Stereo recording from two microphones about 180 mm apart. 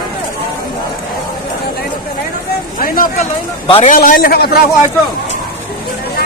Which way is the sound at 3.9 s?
50° left (ahead or behind).